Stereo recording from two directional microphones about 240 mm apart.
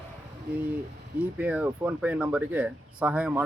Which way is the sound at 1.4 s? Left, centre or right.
Centre.